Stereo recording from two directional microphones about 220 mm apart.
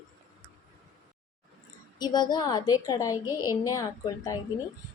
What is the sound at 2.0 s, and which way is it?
A woman's voice, 20° left (ahead or behind).